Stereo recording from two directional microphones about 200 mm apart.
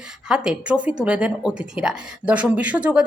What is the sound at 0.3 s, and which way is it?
Speech, 5° right (ahead or behind).